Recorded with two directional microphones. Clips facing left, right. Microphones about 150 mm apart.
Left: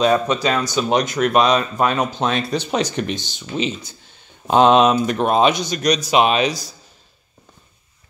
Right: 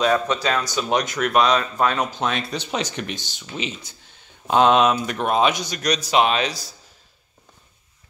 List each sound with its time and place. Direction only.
0.0 s speech: 20° left (ahead or behind); by 3.2 s 40° left (ahead or behind)
3.2 s speech: 25° left (ahead or behind)